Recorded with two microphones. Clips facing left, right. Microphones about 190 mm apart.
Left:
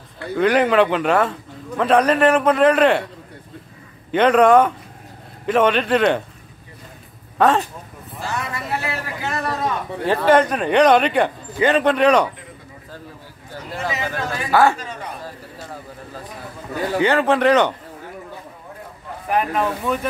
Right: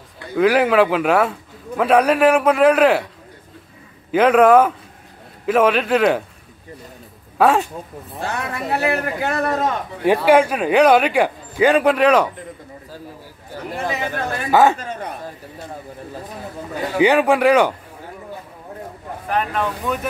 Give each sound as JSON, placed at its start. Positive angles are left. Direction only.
{"t": 0.4, "sound": "speech", "side_deg": -5}
{"t": 4.1, "sound": "speech", "side_deg": -5}
{"t": 7.3, "sound": "speech", "side_deg": -10}
{"t": 8.2, "sound": "a man's voice", "side_deg": -60}
{"t": 10.0, "sound": "speech", "side_deg": -10}
{"t": 13.8, "sound": "speech", "side_deg": -55}
{"t": 14.5, "sound": "speech", "side_deg": -15}
{"t": 17.0, "sound": "speech", "side_deg": -15}
{"t": 19.2, "sound": "speech", "side_deg": 5}